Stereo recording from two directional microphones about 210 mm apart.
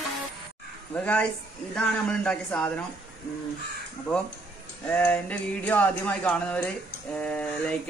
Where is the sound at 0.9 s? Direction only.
5° left (ahead or behind).